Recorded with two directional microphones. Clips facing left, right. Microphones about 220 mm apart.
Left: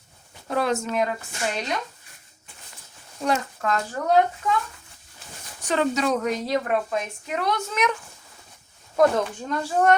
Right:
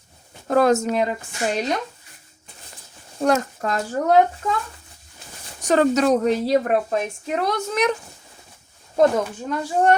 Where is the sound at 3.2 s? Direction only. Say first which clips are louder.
Right 5 dB; 40° right (ahead or behind).